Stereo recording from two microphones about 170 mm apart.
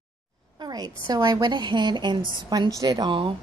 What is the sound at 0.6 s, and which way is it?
A woman's voice, 25° right (ahead or behind).